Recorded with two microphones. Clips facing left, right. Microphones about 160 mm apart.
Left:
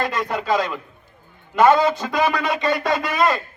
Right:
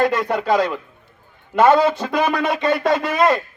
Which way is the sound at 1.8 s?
55° right (ahead or behind).